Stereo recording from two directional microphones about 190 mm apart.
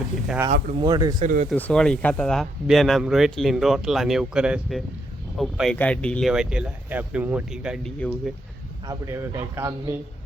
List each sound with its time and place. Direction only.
0.8 s speech: 20° right (ahead or behind)
1.2 s speech: 45° right (ahead or behind)
1.5 s speech: 5° left (ahead or behind)
8.9 s a man's voice: 15° right (ahead or behind)